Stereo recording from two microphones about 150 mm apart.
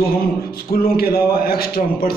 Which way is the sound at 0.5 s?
85° left.